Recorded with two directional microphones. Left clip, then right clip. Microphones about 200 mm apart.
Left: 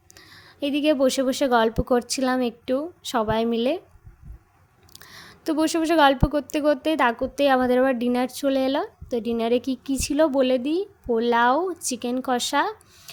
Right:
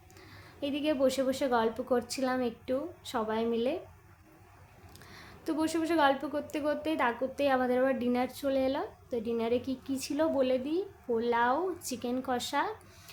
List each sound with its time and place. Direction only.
0.2 s a woman's voice: 45° left (ahead or behind)
4.9 s a woman's voice: 45° left (ahead or behind)